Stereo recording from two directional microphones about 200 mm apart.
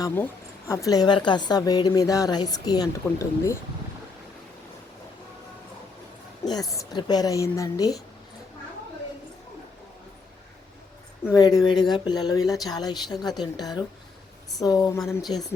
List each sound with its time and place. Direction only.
0.0 s a woman's voice: 10° left (ahead or behind)
6.4 s a woman's voice: 20° left (ahead or behind)
11.3 s a woman's voice: 20° left (ahead or behind)